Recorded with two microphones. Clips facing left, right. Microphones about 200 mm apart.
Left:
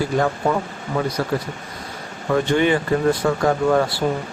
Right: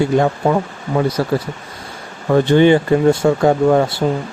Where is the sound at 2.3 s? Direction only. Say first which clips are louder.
Right 7 dB; 30° right (ahead or behind).